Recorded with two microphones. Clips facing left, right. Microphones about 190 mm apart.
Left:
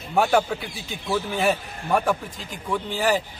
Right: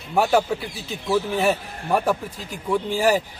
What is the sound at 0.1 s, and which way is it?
A man's voice, 5° right (ahead or behind).